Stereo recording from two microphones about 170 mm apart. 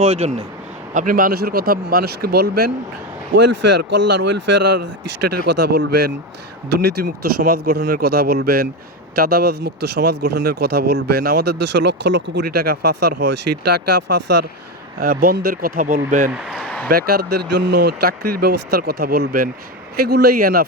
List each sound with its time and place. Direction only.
0.0 s speech: 40° right (ahead or behind)
0.9 s speech: 55° right (ahead or behind)
3.3 s speech: 90° right
5.5 s speech: 80° right
14.9 s speech: 60° right (ahead or behind)
16.3 s a man's voice: 5° right (ahead or behind)
16.6 s a sound: 10° left (ahead or behind)
16.9 s speech: 65° right (ahead or behind)